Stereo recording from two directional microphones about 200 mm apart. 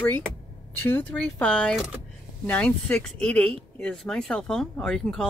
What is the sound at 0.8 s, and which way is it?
Speech, 10° left (ahead or behind).